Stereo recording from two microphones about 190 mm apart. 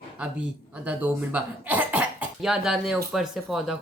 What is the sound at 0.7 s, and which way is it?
Speech, 10° right (ahead or behind).